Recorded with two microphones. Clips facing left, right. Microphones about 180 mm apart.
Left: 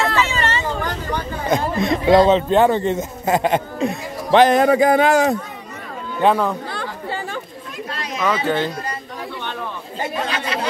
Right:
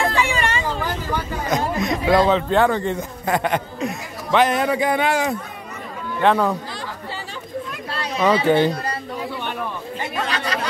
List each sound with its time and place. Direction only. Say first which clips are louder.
0.0 s vehicle: left 1 dB; 15° right (ahead or behind)
1.5 s speech: left 3 dB; 30° left (ahead or behind)
6.7 s chatter: left 4 dB; 60° left (ahead or behind)
7.9 s a sound: right 3 dB; 30° right (ahead or behind)
8.5 s speech: right 4 dB; 15° right (ahead or behind)
10.3 s chatter: even; 40° right (ahead or behind)